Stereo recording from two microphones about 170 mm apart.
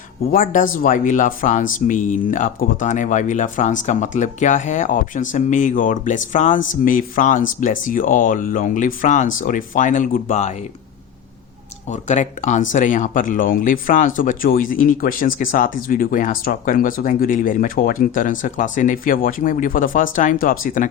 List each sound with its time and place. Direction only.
0.3 s speech: 55° left (ahead or behind)
11.9 s speech: 45° left (ahead or behind)